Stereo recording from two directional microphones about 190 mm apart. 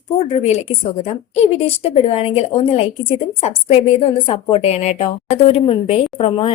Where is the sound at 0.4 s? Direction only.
35° left (ahead or behind).